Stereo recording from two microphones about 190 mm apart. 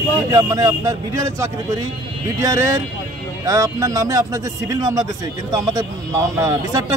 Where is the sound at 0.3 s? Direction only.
20° right (ahead or behind).